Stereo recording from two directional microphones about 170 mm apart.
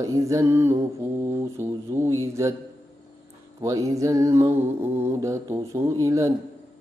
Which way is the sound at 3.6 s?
20° right (ahead or behind).